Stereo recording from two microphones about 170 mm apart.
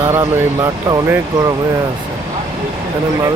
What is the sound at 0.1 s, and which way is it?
Speech, 15° right (ahead or behind).